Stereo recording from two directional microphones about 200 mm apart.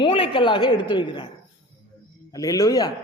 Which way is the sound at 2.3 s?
15° left (ahead or behind).